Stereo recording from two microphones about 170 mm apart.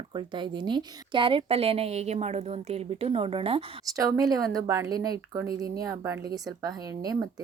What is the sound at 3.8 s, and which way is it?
Speech, 20° right (ahead or behind).